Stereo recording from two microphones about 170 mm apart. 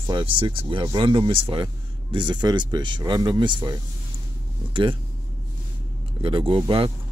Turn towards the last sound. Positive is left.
turn(degrees=-30)  # may be behind; listen again after turning